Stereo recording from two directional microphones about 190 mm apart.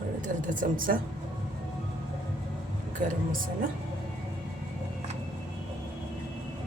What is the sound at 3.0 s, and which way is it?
Speech, 40° right (ahead or behind).